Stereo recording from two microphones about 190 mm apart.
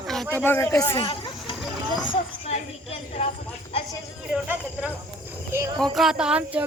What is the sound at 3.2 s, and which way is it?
Speech, 30° left (ahead or behind).